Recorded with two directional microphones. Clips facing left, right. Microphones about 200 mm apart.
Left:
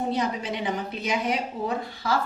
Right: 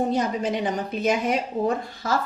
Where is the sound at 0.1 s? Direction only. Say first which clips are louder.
Right 4 dB; 45° right (ahead or behind).